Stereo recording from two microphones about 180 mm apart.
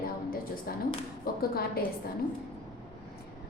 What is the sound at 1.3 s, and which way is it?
Speech, 55° left (ahead or behind).